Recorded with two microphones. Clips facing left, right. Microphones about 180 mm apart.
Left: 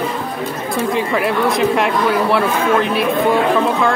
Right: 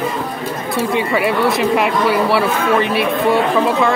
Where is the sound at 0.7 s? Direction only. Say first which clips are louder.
Right 1 dB; centre (ahead or behind).